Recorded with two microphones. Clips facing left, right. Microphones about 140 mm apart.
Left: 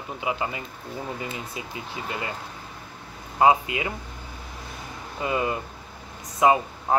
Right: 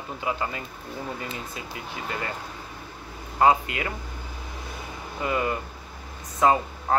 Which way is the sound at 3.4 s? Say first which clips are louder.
Left 1 dB; 15° left (ahead or behind).